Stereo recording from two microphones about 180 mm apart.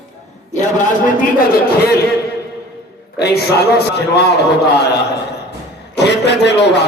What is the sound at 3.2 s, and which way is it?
A man's voice, 65° left (ahead or behind).